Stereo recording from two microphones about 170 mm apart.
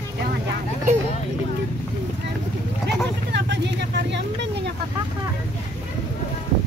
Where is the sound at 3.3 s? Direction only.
90° right.